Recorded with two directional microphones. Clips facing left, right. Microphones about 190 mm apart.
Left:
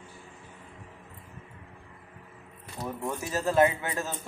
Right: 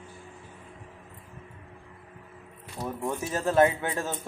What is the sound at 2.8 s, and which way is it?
Speech, 10° right (ahead or behind).